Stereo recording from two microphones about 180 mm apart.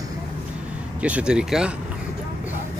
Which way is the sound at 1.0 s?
5° right (ahead or behind).